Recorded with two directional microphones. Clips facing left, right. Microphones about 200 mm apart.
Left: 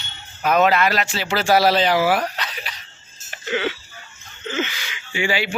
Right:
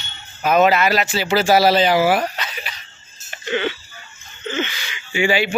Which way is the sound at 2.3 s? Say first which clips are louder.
Right 1 dB; centre (ahead or behind).